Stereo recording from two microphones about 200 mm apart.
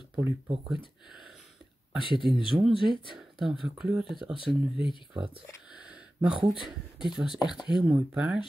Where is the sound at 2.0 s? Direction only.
25° left (ahead or behind).